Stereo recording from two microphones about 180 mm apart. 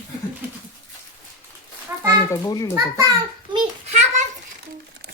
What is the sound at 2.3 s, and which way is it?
Speech, 20° left (ahead or behind).